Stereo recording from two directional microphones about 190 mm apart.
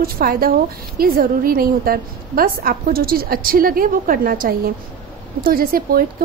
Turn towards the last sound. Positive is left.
turn(degrees=-50)  # may be behind; listen again after turning